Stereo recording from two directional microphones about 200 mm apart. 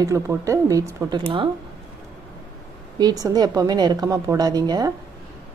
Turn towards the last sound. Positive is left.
turn(degrees=-20)  # may be behind; listen again after turning